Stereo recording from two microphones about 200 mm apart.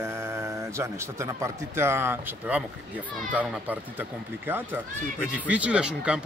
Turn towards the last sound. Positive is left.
turn(degrees=-5)  # may be behind; listen again after turning